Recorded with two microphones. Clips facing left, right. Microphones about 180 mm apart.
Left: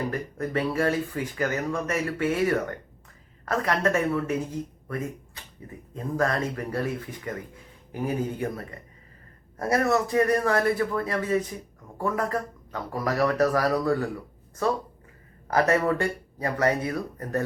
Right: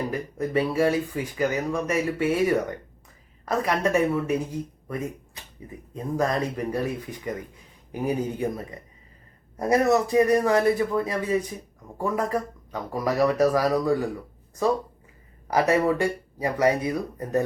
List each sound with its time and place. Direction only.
0.1 s speech: 15° right (ahead or behind)
5.9 s speech: 15° right (ahead or behind)
15.4 s speech: 15° right (ahead or behind)